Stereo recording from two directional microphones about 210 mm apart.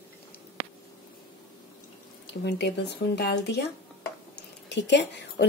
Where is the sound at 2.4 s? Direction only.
55° left (ahead or behind).